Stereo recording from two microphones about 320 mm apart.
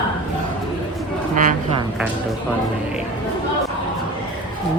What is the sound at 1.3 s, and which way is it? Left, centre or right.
Speech, right.